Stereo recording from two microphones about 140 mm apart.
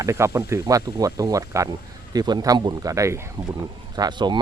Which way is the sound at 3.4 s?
35° right (ahead or behind).